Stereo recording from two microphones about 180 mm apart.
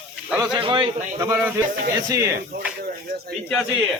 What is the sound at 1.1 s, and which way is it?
Speech, 15° right (ahead or behind).